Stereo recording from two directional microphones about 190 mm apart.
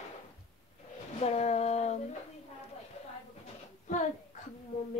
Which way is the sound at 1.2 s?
35° left (ahead or behind).